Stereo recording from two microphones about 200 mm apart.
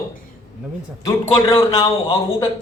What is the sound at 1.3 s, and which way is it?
Speech, 30° left (ahead or behind).